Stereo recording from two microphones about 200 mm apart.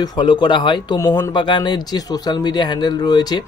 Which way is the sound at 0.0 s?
20° left (ahead or behind).